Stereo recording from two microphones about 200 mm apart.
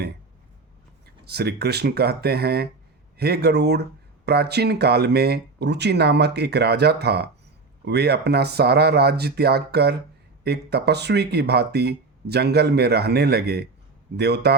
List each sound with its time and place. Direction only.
1.2 s speech: 55° right (ahead or behind)